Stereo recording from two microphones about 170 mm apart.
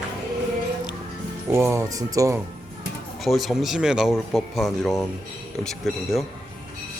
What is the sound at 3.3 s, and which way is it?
Speech, centre (ahead or behind).